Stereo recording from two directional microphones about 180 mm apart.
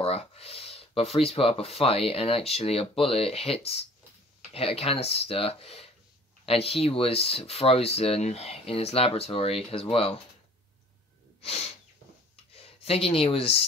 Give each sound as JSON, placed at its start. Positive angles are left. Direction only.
{"t": 0.0, "sound": "speech", "side_deg": 35}
{"t": 12.5, "sound": "speech", "side_deg": 35}